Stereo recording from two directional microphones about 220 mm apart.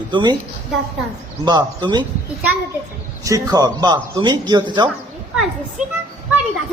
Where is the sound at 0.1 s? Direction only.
20° right (ahead or behind).